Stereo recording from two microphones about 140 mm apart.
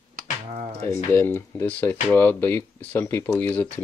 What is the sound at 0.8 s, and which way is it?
Speech, 20° left (ahead or behind).